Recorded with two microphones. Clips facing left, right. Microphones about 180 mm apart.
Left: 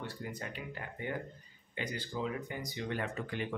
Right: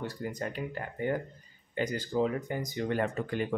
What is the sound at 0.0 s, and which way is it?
Speech, 40° right (ahead or behind).